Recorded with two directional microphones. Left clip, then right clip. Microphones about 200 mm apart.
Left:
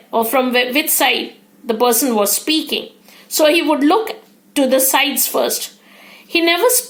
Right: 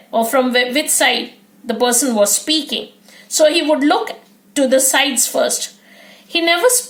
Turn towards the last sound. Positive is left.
turn(degrees=10)  # may be behind; listen again after turning